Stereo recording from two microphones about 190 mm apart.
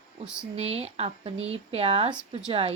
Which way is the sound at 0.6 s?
30° right (ahead or behind).